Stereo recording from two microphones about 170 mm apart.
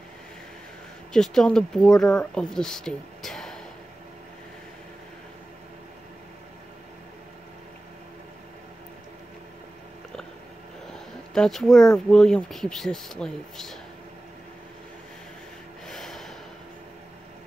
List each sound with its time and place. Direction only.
1.1 s speech: centre (ahead or behind)
10.9 s speech: centre (ahead or behind)
15.9 s snort: centre (ahead or behind)